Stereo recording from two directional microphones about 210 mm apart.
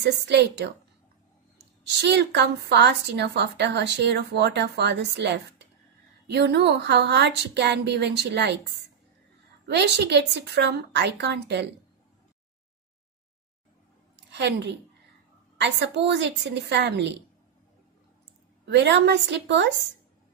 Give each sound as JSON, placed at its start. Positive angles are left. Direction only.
{"t": 0.0, "sound": "a woman's voice", "side_deg": -55}
{"t": 1.9, "sound": "a woman's voice", "side_deg": -55}
{"t": 9.7, "sound": "a woman's voice", "side_deg": -55}
{"t": 14.1, "sound": "a sound", "side_deg": -55}
{"t": 15.5, "sound": "a woman's voice", "side_deg": -55}
{"t": 18.7, "sound": "a woman's voice", "side_deg": -55}